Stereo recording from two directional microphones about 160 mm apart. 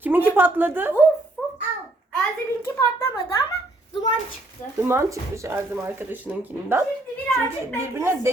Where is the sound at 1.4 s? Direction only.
10° left (ahead or behind).